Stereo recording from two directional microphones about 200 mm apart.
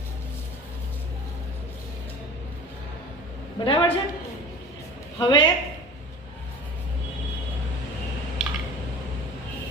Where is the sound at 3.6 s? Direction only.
25° left (ahead or behind).